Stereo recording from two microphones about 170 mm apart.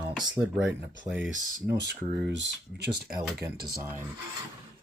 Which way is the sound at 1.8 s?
90° right.